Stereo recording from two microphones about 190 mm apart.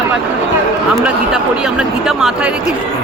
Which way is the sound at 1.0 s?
5° right (ahead or behind).